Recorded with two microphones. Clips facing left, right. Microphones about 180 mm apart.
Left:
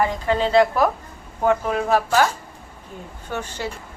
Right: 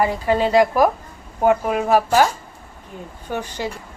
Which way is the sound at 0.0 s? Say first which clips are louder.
Right 2 dB; 10° right (ahead or behind).